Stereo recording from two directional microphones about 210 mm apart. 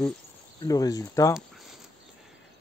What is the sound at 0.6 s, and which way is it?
Speech, 15° left (ahead or behind).